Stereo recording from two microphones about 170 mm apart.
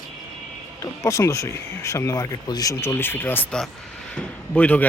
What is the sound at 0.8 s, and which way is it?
A man's voice, 20° left (ahead or behind).